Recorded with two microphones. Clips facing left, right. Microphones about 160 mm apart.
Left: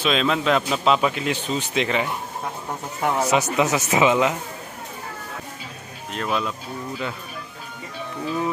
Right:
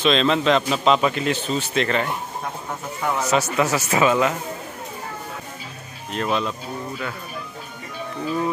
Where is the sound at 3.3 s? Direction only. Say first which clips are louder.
Right 3 dB; 15° left (ahead or behind).